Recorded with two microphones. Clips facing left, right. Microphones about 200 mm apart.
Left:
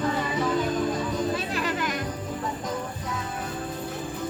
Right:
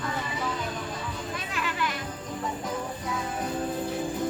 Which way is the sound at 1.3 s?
35° left (ahead or behind).